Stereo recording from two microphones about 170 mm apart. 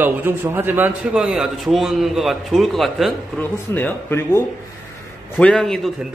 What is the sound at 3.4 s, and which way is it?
A man's voice, 10° left (ahead or behind).